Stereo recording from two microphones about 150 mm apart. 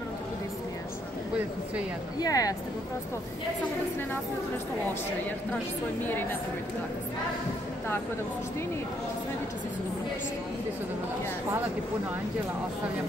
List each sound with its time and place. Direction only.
2.1 s speech: 25° left (ahead or behind)